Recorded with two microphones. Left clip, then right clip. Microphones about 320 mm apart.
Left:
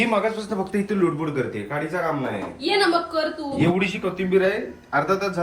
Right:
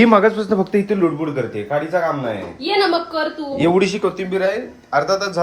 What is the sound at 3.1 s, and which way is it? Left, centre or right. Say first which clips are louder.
A man's voice: right 3 dB; right.